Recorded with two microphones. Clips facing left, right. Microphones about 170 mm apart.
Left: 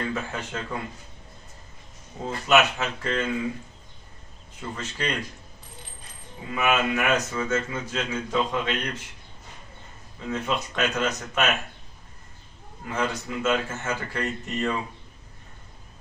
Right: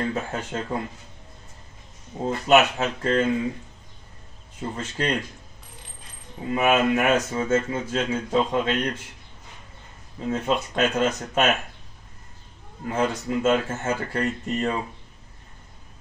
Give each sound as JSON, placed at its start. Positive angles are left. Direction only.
{"t": 0.0, "sound": "speech", "side_deg": -35}
{"t": 2.2, "sound": "speech", "side_deg": -30}
{"t": 4.6, "sound": "speech", "side_deg": -30}
{"t": 6.5, "sound": "speech", "side_deg": -35}
{"t": 10.3, "sound": "speech", "side_deg": -30}
{"t": 12.8, "sound": "speech", "side_deg": -35}